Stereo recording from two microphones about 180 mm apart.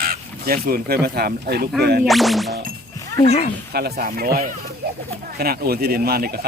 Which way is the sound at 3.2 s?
35° left (ahead or behind).